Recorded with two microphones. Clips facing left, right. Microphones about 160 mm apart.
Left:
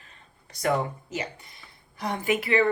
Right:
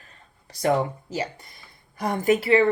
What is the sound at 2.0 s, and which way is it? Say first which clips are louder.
Speech: right 5 dB; 45° right (ahead or behind).